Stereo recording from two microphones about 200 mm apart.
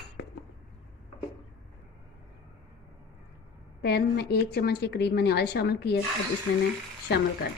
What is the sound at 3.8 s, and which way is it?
A woman's voice, 55° left (ahead or behind).